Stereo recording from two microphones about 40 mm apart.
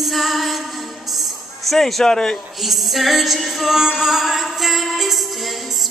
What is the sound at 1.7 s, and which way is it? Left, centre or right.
Speech, centre.